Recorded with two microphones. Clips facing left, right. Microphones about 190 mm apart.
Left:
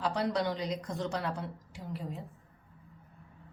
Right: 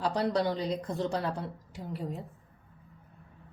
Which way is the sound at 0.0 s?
35° right (ahead or behind).